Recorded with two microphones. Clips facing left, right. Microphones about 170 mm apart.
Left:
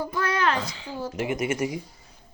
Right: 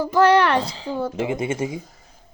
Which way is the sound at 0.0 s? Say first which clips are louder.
Right 10 dB; 85° right.